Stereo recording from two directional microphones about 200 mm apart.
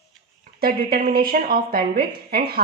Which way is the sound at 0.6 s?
50° right (ahead or behind).